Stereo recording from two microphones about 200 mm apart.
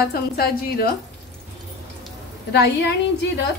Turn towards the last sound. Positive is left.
turn(degrees=55)  # may be behind; listen again after turning